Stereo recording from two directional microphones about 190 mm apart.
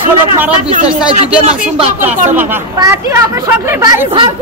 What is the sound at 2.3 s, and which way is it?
Speech, 15° right (ahead or behind).